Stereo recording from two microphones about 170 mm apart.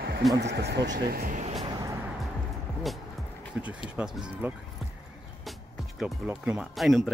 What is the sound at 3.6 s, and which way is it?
Speech, 10° right (ahead or behind).